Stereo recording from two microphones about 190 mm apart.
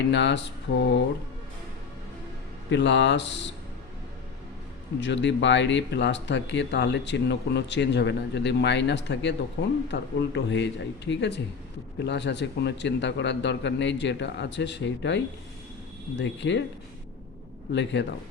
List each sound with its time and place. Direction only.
0.1 s speech: 70° left (ahead or behind)
2.6 s speech: 65° left (ahead or behind)
4.9 s speech: 70° left (ahead or behind)
17.7 s speech: 70° left (ahead or behind)